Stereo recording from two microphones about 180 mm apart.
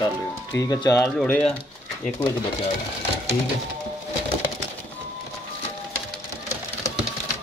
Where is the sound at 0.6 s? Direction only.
20° left (ahead or behind).